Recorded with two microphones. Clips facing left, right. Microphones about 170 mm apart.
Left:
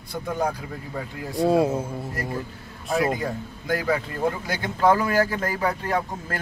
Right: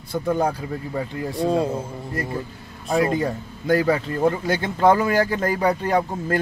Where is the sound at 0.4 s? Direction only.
30° right (ahead or behind).